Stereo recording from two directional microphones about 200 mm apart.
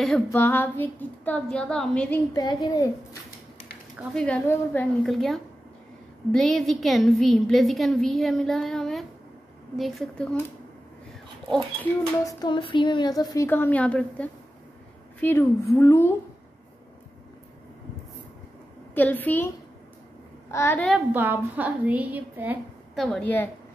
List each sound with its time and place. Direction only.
0.0 s female singing: 5° left (ahead or behind)
2.3 s a child's voice: 20° left (ahead or behind)
4.1 s a woman's voice: 5° left (ahead or behind)
12.3 s female singing: 20° left (ahead or behind)
18.9 s female singing: 10° left (ahead or behind)
20.5 s female singing: 10° left (ahead or behind)
21.1 s a woman's voice: 10° right (ahead or behind)
23.0 s female singing: 5° left (ahead or behind)